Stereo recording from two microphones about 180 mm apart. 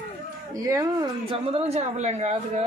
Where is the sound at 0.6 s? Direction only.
20° right (ahead or behind).